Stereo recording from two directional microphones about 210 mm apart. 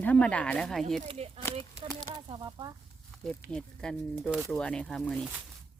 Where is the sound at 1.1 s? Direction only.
30° right (ahead or behind).